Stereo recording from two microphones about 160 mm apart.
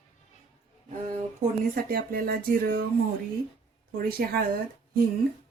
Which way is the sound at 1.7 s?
65° right (ahead or behind).